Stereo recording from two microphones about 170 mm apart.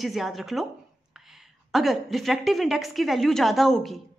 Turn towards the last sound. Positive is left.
turn(degrees=0)  # may be behind; listen again after turning